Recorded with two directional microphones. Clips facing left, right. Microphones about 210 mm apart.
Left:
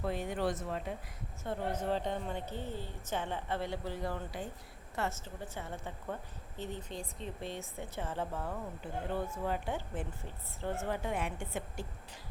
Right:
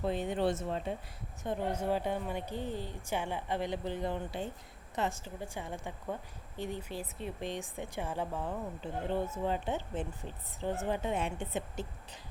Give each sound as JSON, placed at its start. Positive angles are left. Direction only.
{"t": 0.0, "sound": "speech", "side_deg": -20}
{"t": 1.5, "sound": "a woman's voice", "side_deg": -10}
{"t": 8.8, "sound": "speech", "side_deg": -25}